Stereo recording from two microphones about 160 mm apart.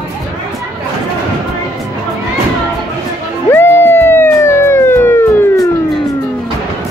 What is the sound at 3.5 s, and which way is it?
Music, 15° left (ahead or behind).